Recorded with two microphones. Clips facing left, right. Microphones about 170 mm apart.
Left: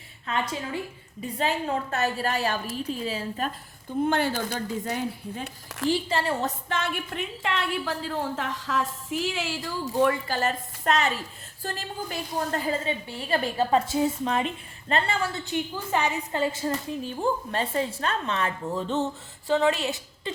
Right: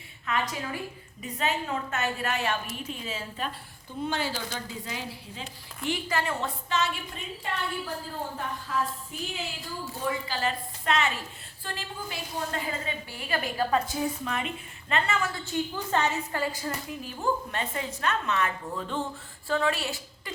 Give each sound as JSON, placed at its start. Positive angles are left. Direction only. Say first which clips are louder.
{"t": 0.3, "sound": "a woman's voice", "louder": "left 1 dB", "side_deg": 30}
{"t": 4.0, "sound": "a woman's voice", "louder": "left 6 dB", "side_deg": 55}
{"t": 5.9, "sound": "a woman's voice", "louder": "left 3 dB", "side_deg": 30}
{"t": 6.4, "sound": "a woman's voice", "louder": "even", "side_deg": 55}
{"t": 9.9, "sound": "speech", "louder": "left 10 dB", "side_deg": 75}
{"t": 10.2, "sound": "a woman's voice", "louder": "left 3 dB", "side_deg": 45}
{"t": 12.8, "sound": "a woman's voice", "louder": "left 5 dB", "side_deg": 30}
{"t": 15.4, "sound": "a woman's voice", "louder": "left 1 dB", "side_deg": 10}